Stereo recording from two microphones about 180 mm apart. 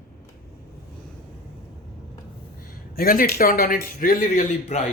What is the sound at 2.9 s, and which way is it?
Speech, 55° left (ahead or behind).